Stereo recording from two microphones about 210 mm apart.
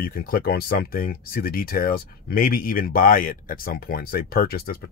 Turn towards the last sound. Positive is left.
turn(degrees=45)  # may be behind; listen again after turning